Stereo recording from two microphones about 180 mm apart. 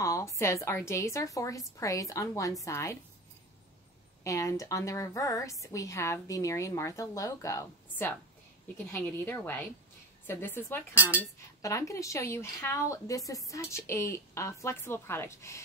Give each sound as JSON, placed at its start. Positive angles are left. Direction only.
{"t": 0.0, "sound": "a woman's voice", "side_deg": 15}
{"t": 4.2, "sound": "a woman's voice", "side_deg": 15}
{"t": 11.0, "sound": "speech", "side_deg": -10}
{"t": 11.6, "sound": "a woman's voice", "side_deg": 15}